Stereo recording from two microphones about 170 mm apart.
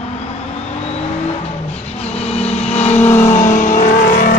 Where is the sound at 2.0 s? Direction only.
40° left (ahead or behind).